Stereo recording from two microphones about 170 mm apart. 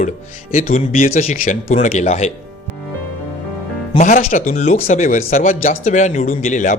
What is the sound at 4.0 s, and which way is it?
A man's voice, 50° left (ahead or behind).